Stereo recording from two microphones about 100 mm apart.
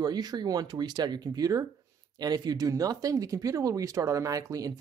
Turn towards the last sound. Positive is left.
turn(degrees=-35)  # may be behind; listen again after turning